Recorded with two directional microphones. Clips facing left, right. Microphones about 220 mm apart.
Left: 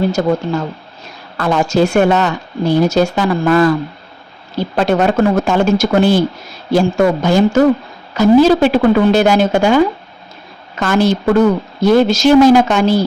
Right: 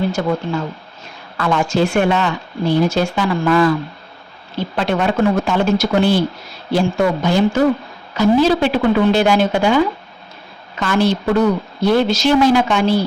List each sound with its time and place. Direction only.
0.1 s a woman's voice: 40° left (ahead or behind)